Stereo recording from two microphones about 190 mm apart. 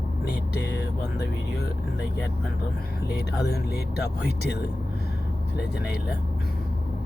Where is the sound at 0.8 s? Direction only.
60° left (ahead or behind).